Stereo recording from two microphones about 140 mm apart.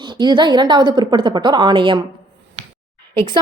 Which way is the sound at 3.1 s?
35° right (ahead or behind).